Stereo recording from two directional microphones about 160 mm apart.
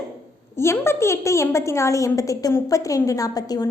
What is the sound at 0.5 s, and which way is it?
A woman's voice, 15° left (ahead or behind).